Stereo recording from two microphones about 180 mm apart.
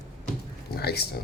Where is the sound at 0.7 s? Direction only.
60° left (ahead or behind).